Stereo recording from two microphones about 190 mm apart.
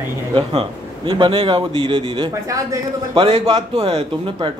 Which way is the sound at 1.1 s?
25° right (ahead or behind).